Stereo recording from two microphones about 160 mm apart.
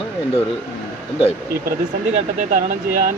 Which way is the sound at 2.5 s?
60° right (ahead or behind).